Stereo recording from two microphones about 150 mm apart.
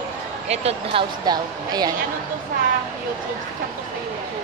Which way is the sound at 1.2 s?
25° right (ahead or behind).